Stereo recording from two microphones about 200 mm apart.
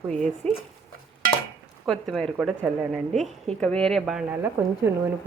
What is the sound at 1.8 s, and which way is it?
Stir, centre (ahead or behind).